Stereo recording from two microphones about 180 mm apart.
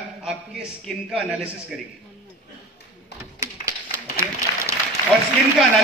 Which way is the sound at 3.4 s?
15° right (ahead or behind).